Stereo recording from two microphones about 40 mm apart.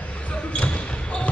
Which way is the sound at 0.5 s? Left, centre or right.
Left.